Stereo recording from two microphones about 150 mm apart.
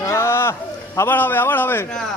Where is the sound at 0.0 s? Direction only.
15° left (ahead or behind).